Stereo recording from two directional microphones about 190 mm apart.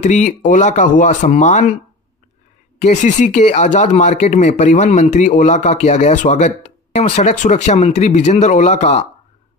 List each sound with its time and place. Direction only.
0.0 s speech: 40° left (ahead or behind)
2.8 s speech: 40° left (ahead or behind)